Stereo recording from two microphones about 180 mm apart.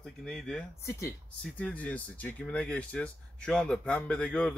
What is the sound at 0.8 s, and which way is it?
Speech, 15° left (ahead or behind).